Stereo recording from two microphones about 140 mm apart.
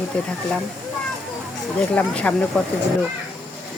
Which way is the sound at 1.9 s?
10° left (ahead or behind).